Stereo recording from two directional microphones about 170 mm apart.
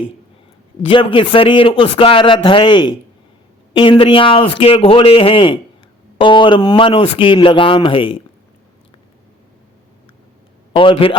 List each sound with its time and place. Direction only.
0.9 s speech: 30° left (ahead or behind)
10.7 s speech: 30° left (ahead or behind)